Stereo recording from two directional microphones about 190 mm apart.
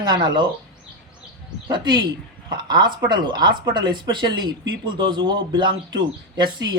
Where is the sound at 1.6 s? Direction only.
25° right (ahead or behind).